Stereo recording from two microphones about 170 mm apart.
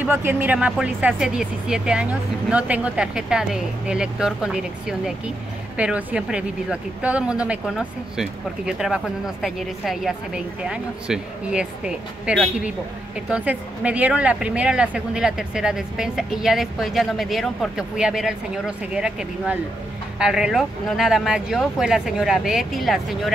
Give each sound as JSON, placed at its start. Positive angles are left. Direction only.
{"t": 0.0, "sound": "speech", "side_deg": -10}